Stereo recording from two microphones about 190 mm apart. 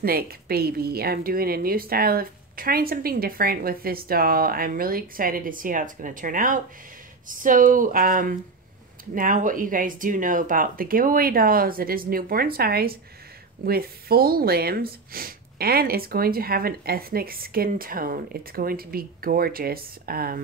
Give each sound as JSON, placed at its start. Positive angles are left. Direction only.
{"t": 0.0, "sound": "speech", "side_deg": -55}